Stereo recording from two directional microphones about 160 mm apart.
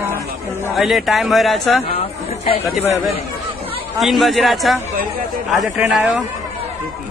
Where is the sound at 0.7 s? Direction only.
Centre (ahead or behind).